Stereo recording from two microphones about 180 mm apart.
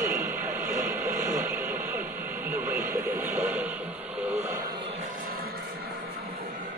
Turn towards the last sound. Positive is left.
turn(degrees=-55)  # may be behind; listen again after turning